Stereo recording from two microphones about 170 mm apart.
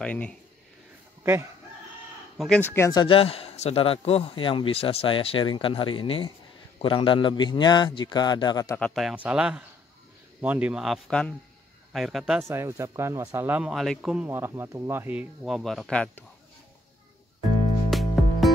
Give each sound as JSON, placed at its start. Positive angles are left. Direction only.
{"t": 0.0, "sound": "speech", "side_deg": 5}
{"t": 1.2, "sound": "speech", "side_deg": -15}
{"t": 2.3, "sound": "speech", "side_deg": 0}
{"t": 2.6, "sound": "a man's voice", "side_deg": 15}
{"t": 8.7, "sound": "a man's voice", "side_deg": 5}
{"t": 12.4, "sound": "a man's voice", "side_deg": -15}
{"t": 17.9, "sound": "music", "side_deg": 0}